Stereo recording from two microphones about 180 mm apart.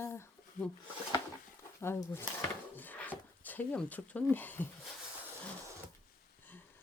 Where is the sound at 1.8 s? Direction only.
15° left (ahead or behind).